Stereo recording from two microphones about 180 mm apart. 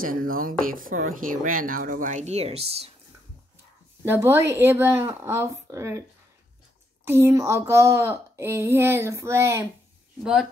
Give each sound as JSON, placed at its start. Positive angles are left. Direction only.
{"t": 0.0, "sound": "speech", "side_deg": -50}
{"t": 4.0, "sound": "speech", "side_deg": -15}
{"t": 7.1, "sound": "speech", "side_deg": -15}